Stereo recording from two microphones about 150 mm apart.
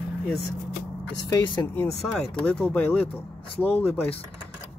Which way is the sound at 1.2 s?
25° left (ahead or behind).